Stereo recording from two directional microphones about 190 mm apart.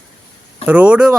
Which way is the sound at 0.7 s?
5° right (ahead or behind).